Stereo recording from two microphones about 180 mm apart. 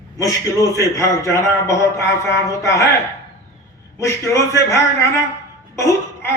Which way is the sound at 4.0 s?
15° left (ahead or behind).